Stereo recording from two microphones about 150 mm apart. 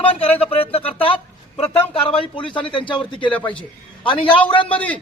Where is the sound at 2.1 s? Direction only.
35° left (ahead or behind).